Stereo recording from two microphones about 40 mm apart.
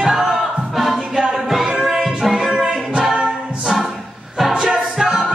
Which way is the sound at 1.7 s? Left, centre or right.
Centre.